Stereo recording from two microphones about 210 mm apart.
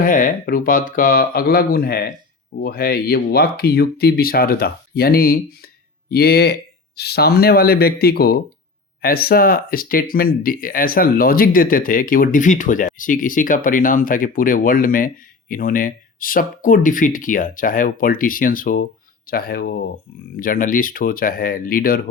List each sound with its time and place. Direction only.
0.0 s speech: 40° left (ahead or behind)